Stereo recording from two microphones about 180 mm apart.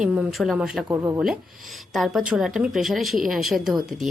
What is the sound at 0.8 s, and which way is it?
Speech, 15° right (ahead or behind).